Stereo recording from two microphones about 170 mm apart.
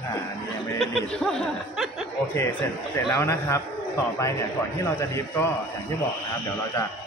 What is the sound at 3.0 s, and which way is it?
Speech, 15° left (ahead or behind).